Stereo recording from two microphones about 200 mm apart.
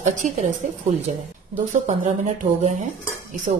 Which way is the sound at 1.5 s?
35° right (ahead or behind).